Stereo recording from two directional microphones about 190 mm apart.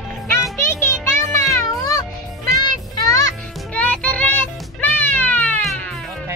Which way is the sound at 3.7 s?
5° left (ahead or behind).